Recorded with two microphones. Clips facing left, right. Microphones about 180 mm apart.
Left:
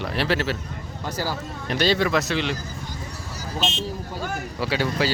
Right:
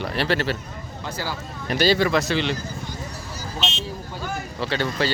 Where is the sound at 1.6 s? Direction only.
5° right (ahead or behind).